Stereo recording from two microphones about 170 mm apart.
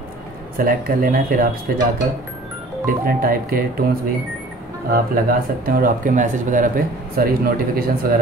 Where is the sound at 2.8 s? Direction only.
55° right (ahead or behind).